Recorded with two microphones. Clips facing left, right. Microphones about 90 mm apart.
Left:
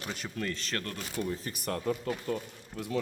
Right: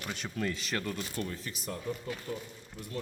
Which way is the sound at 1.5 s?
65° left (ahead or behind).